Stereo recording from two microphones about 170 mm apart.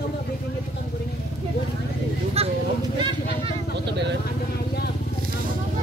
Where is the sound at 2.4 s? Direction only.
35° right (ahead or behind).